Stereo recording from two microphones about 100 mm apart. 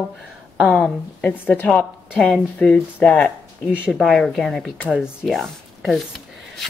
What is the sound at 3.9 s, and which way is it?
A woman's voice, centre (ahead or behind).